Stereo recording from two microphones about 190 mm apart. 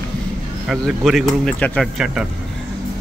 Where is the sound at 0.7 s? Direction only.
Centre (ahead or behind).